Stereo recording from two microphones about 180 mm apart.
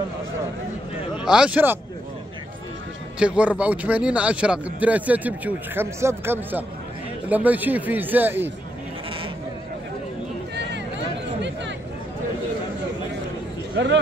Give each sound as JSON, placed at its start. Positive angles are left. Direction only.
{"t": 1.1, "sound": "speech", "side_deg": -5}
{"t": 3.2, "sound": "a man's voice", "side_deg": -5}
{"t": 13.8, "sound": "speech", "side_deg": -70}